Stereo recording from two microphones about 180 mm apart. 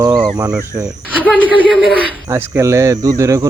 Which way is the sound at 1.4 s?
Centre (ahead or behind).